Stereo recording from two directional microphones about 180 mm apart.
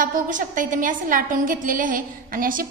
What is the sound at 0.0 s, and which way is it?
A woman's voice, 45° right (ahead or behind).